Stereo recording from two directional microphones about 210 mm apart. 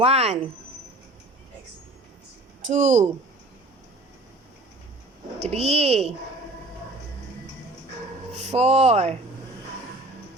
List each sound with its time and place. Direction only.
0.0 s speech: 30° right (ahead or behind)
2.6 s speech: 35° right (ahead or behind)
5.4 s speech: 30° right (ahead or behind)
8.3 s speech: 30° right (ahead or behind)